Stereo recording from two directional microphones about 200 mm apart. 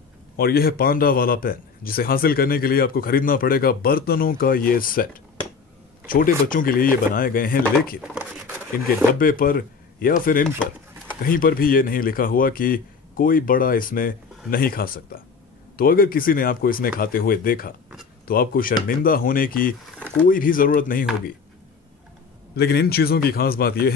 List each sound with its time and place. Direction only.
0.4 s a man's voice: 50° left (ahead or behind)
8.1 s a sound: 5° right (ahead or behind)
9.2 s a man's voice: 45° left (ahead or behind)
22.6 s a man's voice: 55° left (ahead or behind)